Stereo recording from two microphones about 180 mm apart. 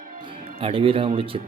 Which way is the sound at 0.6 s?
30° right (ahead or behind).